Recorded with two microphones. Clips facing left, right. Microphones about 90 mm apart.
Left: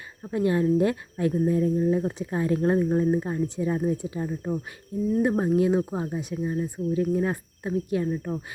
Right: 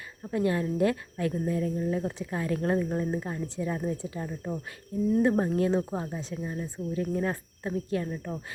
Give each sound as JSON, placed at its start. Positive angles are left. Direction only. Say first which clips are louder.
{"t": 0.2, "sound": "speech", "louder": "left 4 dB", "side_deg": 20}